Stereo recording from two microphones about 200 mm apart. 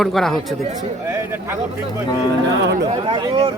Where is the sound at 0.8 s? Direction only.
15° right (ahead or behind).